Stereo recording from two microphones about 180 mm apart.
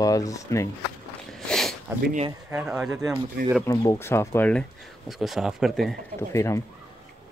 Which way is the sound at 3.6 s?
20° left (ahead or behind).